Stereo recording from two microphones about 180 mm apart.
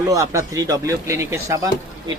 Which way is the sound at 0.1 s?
20° right (ahead or behind).